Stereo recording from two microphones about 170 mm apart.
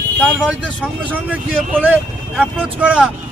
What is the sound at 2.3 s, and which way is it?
Speech, 10° right (ahead or behind).